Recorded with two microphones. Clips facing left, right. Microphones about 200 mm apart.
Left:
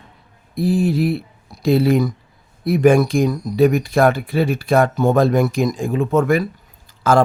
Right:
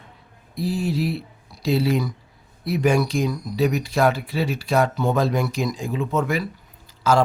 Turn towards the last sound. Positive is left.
turn(degrees=50)  # may be behind; listen again after turning